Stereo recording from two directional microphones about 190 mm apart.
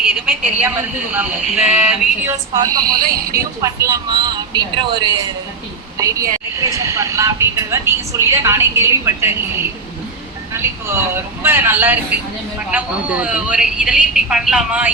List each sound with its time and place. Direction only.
0.0 s a woman's voice: 5° right (ahead or behind)
2.2 s speech: 20° right (ahead or behind)
2.8 s speech: 50° right (ahead or behind)
3.3 s a woman's voice: 15° right (ahead or behind)
10.5 s a woman's voice: 15° right (ahead or behind)